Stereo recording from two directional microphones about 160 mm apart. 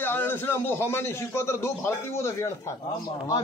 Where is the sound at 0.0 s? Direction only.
15° left (ahead or behind).